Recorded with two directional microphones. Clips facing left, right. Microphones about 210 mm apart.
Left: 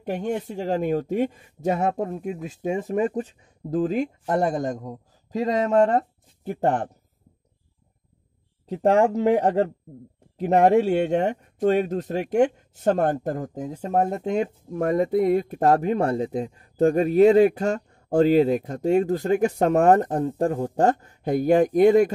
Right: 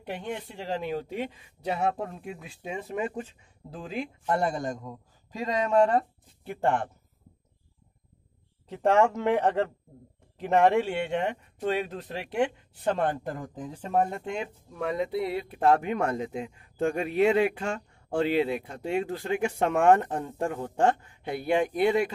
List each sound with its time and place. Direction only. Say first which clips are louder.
0.0 s speech: left 8 dB; 45° left (ahead or behind)
8.6 s speech: left 4 dB; 35° left (ahead or behind)